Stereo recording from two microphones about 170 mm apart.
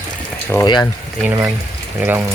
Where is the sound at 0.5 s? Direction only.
15° left (ahead or behind).